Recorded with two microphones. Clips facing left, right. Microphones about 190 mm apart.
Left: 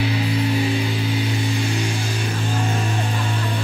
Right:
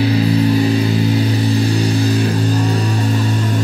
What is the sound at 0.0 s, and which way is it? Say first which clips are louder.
Music: right 8 dB; 40° right (ahead or behind).